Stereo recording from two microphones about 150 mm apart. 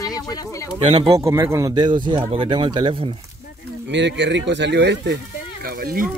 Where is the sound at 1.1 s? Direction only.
20° right (ahead or behind); by 3.0 s 35° right (ahead or behind).